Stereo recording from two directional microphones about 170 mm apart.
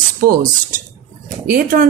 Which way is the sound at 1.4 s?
60° right (ahead or behind).